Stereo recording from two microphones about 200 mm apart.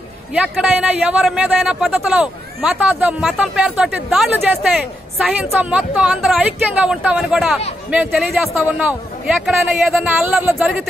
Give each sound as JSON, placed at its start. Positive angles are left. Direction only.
{"t": 0.3, "sound": "a man's voice", "side_deg": -5}